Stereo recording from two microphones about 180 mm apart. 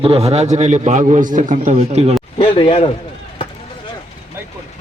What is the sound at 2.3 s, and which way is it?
Speech, 30° left (ahead or behind).